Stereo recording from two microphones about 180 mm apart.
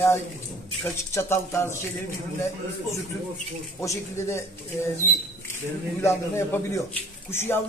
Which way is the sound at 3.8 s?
15° left (ahead or behind).